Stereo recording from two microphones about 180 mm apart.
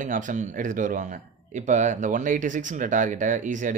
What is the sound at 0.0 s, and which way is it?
Speech, 45° right (ahead or behind).